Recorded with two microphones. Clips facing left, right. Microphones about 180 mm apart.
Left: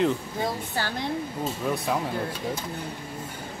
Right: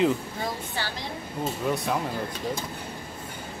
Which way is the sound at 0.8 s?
45° left (ahead or behind).